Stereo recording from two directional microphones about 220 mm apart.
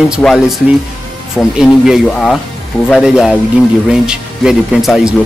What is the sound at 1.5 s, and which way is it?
Speech, centre (ahead or behind).